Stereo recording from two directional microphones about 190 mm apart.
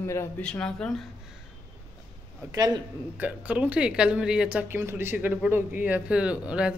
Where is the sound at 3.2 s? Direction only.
10° right (ahead or behind).